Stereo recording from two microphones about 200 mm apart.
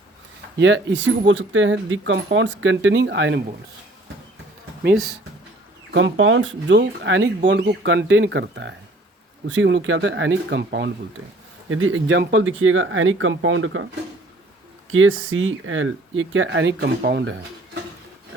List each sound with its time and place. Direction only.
0.6 s speech: 65° right (ahead or behind)
5.9 s speech: 75° right (ahead or behind); by 10.9 s 55° right (ahead or behind)
11.7 s speech: 75° right (ahead or behind)
14.9 s speech: 80° right; by 17.3 s 55° right (ahead or behind)